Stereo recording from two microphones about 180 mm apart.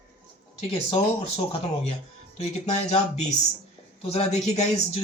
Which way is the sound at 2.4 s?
40° left (ahead or behind).